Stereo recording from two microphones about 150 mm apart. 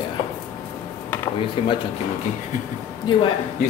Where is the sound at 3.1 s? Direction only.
30° left (ahead or behind).